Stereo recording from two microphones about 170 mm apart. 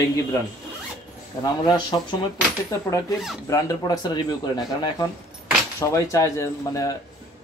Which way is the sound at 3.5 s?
20° left (ahead or behind).